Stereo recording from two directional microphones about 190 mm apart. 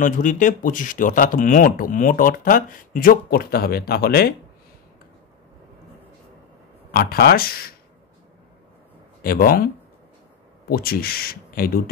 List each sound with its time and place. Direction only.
0.0 s speech: 45° left (ahead or behind)
6.9 s speech: 50° left (ahead or behind)
9.2 s speech: 50° left (ahead or behind)
10.7 s speech: 50° left (ahead or behind)